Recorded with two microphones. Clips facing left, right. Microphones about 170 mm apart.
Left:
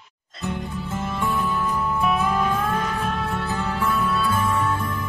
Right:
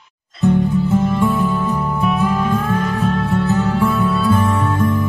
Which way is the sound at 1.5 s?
20° right (ahead or behind).